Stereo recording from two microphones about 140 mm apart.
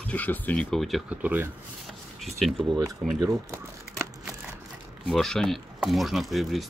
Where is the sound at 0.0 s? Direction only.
10° left (ahead or behind).